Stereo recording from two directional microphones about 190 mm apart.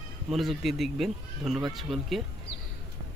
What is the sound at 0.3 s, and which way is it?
Speech, centre (ahead or behind).